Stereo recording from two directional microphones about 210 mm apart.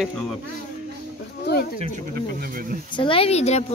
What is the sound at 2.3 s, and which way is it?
Speech, 45° right (ahead or behind).